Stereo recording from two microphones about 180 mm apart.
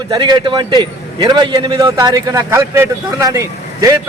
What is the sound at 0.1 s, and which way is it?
A man's voice, 25° right (ahead or behind).